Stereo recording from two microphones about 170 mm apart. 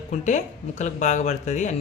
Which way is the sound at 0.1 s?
45° left (ahead or behind).